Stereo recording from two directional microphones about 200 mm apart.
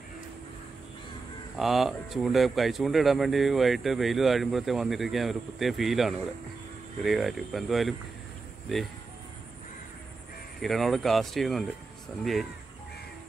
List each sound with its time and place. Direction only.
1.6 s speech: centre (ahead or behind)
10.6 s speech: centre (ahead or behind)